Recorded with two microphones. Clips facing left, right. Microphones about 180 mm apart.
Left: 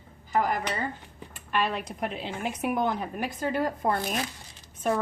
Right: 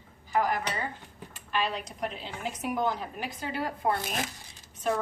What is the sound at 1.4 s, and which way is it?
A woman's voice, 55° left (ahead or behind).